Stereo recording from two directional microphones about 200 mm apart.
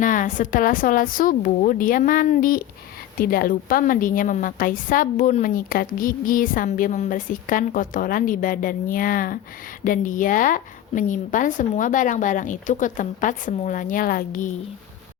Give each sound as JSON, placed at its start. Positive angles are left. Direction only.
{"t": 0.0, "sound": "a woman's voice", "side_deg": 40}